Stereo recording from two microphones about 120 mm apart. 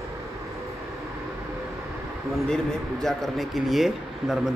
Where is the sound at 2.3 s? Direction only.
5° left (ahead or behind).